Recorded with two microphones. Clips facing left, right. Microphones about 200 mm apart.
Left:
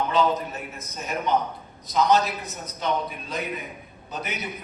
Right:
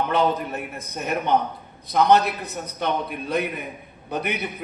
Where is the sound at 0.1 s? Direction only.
60° right (ahead or behind).